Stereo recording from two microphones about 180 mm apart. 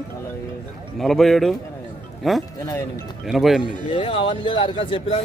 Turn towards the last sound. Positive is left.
turn(degrees=30)  # may be behind; listen again after turning